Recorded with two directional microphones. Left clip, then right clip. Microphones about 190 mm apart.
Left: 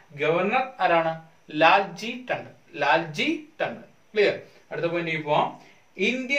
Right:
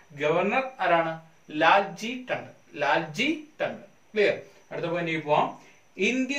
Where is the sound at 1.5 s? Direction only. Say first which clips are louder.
Left 2 dB; 20° left (ahead or behind).